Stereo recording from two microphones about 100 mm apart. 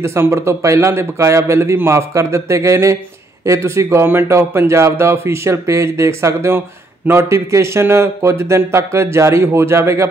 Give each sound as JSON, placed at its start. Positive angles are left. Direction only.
{"t": 0.0, "sound": "speech", "side_deg": -25}